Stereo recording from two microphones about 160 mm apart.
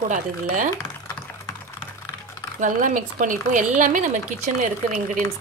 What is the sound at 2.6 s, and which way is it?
A woman's voice, 55° right (ahead or behind).